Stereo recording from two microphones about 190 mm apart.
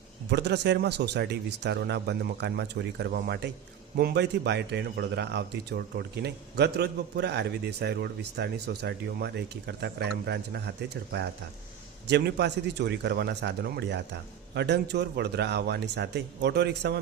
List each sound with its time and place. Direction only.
0.3 s a man's voice: 60° right (ahead or behind)